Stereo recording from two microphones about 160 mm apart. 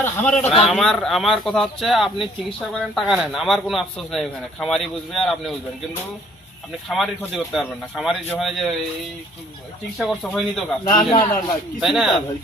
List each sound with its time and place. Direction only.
0.0 s speech: 15° left (ahead or behind)
0.7 s a man's voice: centre (ahead or behind)
6.8 s a man's voice: centre (ahead or behind)
10.0 s a man's voice: centre (ahead or behind)
10.8 s speech: 25° left (ahead or behind)
11.4 s a man's voice: centre (ahead or behind)